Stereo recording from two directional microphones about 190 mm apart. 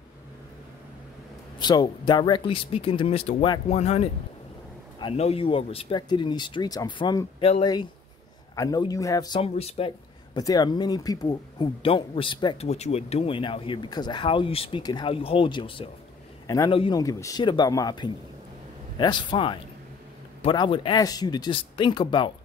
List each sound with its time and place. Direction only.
1.6 s speech: 20° left (ahead or behind)
8.5 s speech: 20° left (ahead or behind)